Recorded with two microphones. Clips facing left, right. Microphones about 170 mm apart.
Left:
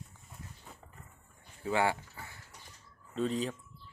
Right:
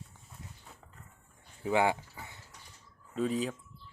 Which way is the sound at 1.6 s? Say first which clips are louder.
Right 2 dB; 15° right (ahead or behind).